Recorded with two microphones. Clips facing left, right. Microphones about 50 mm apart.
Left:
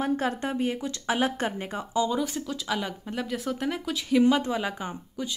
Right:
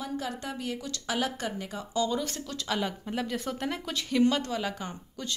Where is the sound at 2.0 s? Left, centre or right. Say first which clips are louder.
Left 3 dB; centre.